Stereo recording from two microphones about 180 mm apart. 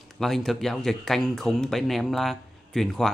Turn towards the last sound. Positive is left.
turn(degrees=0)  # may be behind; listen again after turning